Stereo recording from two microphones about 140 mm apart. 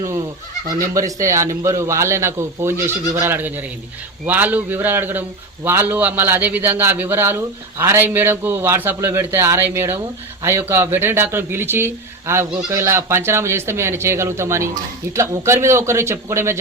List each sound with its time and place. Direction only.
0.7 s a man's voice: 25° right (ahead or behind)